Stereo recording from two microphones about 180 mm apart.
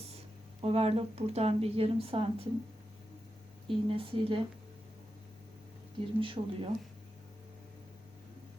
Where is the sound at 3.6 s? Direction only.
30° right (ahead or behind).